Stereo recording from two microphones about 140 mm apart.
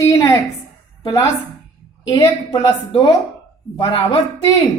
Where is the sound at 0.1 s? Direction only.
25° left (ahead or behind).